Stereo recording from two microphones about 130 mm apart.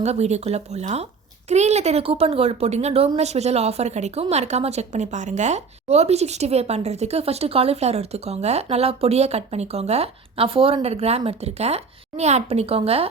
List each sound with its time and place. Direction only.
0.0 s a woman's voice: 55° right (ahead or behind)